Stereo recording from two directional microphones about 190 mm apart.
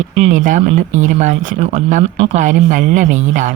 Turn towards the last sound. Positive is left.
turn(degrees=-40)  # may be behind; listen again after turning